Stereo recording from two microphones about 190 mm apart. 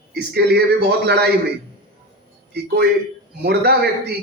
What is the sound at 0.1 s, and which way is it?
A man's voice, 60° right (ahead or behind).